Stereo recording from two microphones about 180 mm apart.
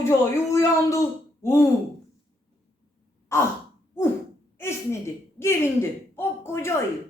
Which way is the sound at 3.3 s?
15° left (ahead or behind).